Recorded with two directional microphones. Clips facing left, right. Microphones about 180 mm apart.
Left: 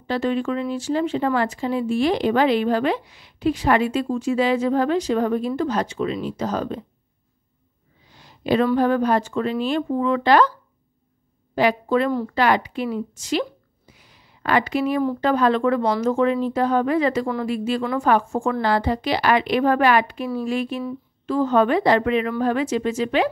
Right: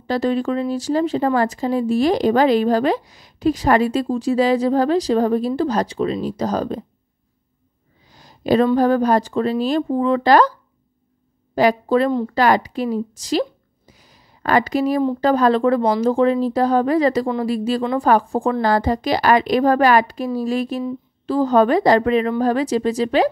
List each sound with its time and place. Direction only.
0.0 s speech: 40° right (ahead or behind)
8.1 s a sound: 40° right (ahead or behind)
8.7 s speech: 40° right (ahead or behind)
11.5 s a woman's voice: 40° right (ahead or behind)